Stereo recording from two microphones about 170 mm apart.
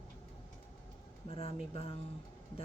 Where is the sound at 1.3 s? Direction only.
35° left (ahead or behind).